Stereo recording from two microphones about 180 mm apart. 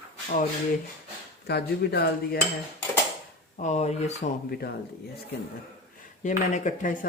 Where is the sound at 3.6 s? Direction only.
40° left (ahead or behind).